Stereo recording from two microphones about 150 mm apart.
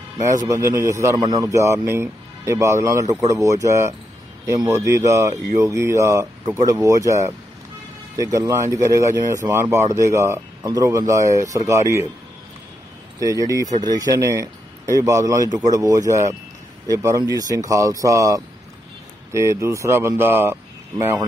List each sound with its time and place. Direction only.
0.2 s speech: 20° right (ahead or behind)
13.2 s speech: 20° right (ahead or behind)